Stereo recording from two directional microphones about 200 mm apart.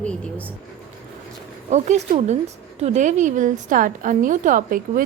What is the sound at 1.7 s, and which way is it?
A woman's voice, 35° right (ahead or behind).